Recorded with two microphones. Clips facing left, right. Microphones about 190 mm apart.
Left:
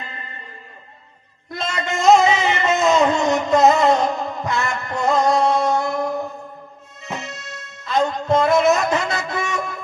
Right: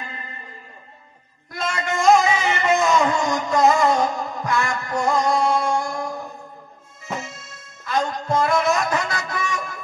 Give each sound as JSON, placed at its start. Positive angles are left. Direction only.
{"t": 1.5, "sound": "music", "side_deg": 25}
{"t": 7.8, "sound": "music", "side_deg": 25}